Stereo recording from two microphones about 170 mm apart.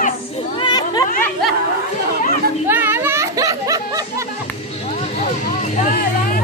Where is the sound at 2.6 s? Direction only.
10° right (ahead or behind).